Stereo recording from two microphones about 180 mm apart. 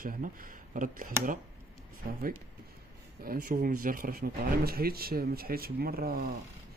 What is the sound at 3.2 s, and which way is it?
Speech, 50° right (ahead or behind).